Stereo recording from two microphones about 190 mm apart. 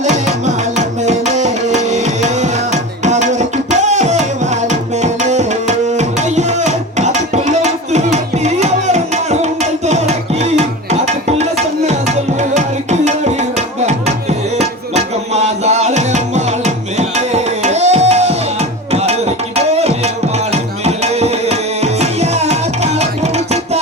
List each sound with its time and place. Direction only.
0.0 s music: 40° right (ahead or behind)
3.0 s tabla: 40° right (ahead or behind)
10.6 s music: 35° right (ahead or behind)
11.9 s tabla: 35° right (ahead or behind)
13.8 s music: 35° right (ahead or behind)
19.5 s tabla: 35° right (ahead or behind)
20.5 s music: 35° right (ahead or behind)